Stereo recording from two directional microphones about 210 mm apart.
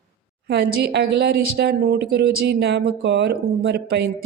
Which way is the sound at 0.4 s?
55° right (ahead or behind).